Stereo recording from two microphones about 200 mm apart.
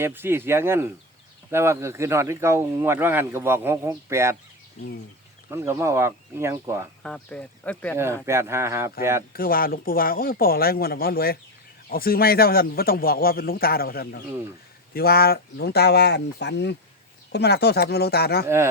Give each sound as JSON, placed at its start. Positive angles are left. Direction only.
{"t": 0.0, "sound": "speech", "side_deg": -10}
{"t": 4.8, "sound": "speech", "side_deg": 35}
{"t": 5.5, "sound": "speech", "side_deg": -15}
{"t": 7.0, "sound": "speech", "side_deg": 5}
{"t": 7.9, "sound": "speech", "side_deg": -15}
{"t": 9.3, "sound": "a man's voice", "side_deg": 45}
{"t": 18.4, "sound": "speech", "side_deg": -15}